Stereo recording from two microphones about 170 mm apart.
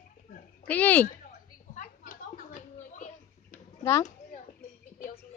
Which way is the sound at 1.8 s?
50° left (ahead or behind).